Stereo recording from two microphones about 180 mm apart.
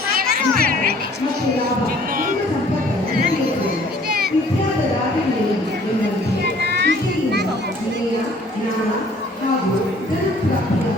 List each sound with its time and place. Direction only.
0.2 s music: 55° right (ahead or behind)
6.4 s music: 70° right (ahead or behind)